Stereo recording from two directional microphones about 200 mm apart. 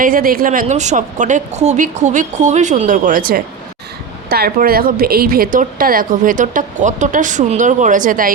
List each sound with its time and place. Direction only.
0.0 s a woman's voice: 45° right (ahead or behind)